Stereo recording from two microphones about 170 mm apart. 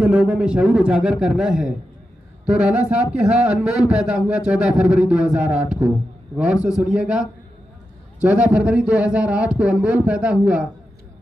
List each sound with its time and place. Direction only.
0.0 s a man's voice: 5° right (ahead or behind)